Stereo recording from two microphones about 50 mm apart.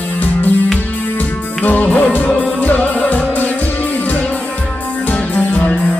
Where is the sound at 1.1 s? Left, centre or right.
Left.